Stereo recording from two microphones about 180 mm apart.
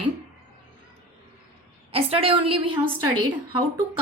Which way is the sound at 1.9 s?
35° right (ahead or behind).